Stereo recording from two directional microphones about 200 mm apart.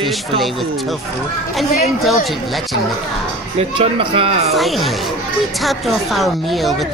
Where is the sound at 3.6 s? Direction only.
25° right (ahead or behind).